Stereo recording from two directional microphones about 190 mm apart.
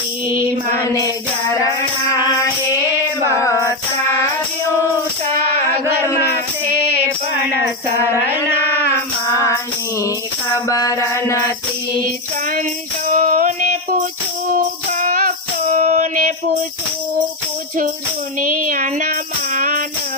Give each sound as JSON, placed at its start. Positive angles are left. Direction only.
{"t": 0.8, "sound": "music", "side_deg": 20}
{"t": 9.3, "sound": "music", "side_deg": 15}
{"t": 10.7, "sound": "music", "side_deg": 20}
{"t": 13.1, "sound": "music", "side_deg": -45}
{"t": 18.3, "sound": "child singing", "side_deg": -45}
{"t": 19.5, "sound": "music", "side_deg": -45}